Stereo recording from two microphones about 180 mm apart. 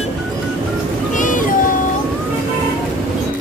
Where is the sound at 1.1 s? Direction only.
45° left (ahead or behind).